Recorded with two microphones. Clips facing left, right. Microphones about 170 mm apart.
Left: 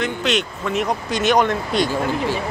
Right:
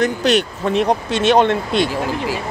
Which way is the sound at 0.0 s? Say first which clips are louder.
Right 5 dB; 40° right (ahead or behind).